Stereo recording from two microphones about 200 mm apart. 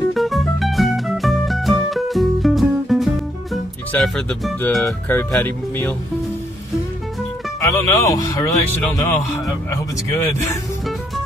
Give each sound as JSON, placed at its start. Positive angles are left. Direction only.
{"t": 0.1, "sound": "music", "side_deg": 0}
{"t": 3.9, "sound": "speech", "side_deg": 5}
{"t": 7.6, "sound": "speech", "side_deg": 15}
{"t": 10.2, "sound": "speech", "side_deg": 10}